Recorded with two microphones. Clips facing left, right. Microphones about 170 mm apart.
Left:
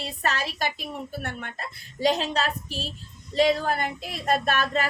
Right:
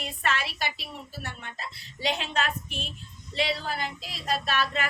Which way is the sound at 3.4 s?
45° left (ahead or behind).